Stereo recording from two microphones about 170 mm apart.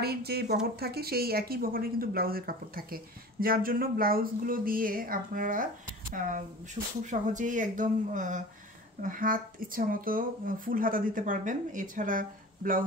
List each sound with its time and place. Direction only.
0.0 s speech: 70° right (ahead or behind)